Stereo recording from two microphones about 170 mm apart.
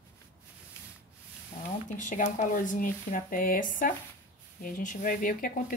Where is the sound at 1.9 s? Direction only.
50° left (ahead or behind).